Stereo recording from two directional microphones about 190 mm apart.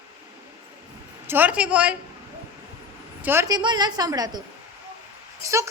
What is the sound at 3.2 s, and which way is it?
A woman's voice, 10° right (ahead or behind).